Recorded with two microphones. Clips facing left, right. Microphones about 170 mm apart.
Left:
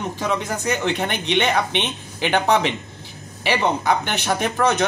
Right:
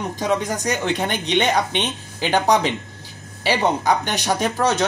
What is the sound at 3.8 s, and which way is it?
Speech, 40° right (ahead or behind).